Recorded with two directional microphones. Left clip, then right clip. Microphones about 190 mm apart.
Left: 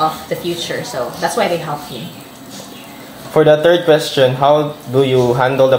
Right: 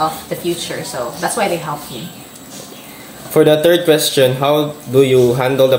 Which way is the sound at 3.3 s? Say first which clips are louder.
Left 1 dB; 45° right (ahead or behind).